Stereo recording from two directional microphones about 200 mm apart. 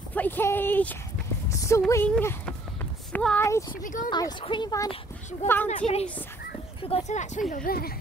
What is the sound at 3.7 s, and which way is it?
Speech, 40° left (ahead or behind).